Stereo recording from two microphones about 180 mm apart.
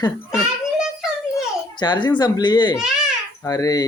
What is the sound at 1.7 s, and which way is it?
Speech, 25° left (ahead or behind).